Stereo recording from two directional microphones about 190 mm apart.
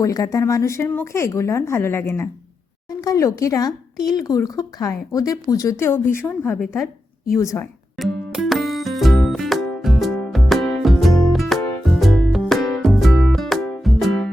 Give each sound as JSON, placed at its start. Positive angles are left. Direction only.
{"t": 0.0, "sound": "speech", "side_deg": 20}
{"t": 7.9, "sound": "music", "side_deg": 0}